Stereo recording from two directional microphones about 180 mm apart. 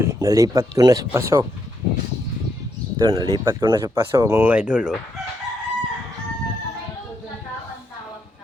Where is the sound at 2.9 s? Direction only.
25° right (ahead or behind); by 4.9 s 5° right (ahead or behind).